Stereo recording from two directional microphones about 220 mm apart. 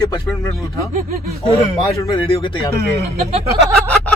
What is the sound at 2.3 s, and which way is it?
Speech, 25° left (ahead or behind).